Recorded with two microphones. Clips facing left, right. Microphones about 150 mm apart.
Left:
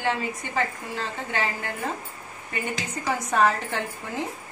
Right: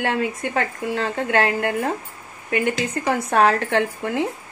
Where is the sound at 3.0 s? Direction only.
60° right (ahead or behind).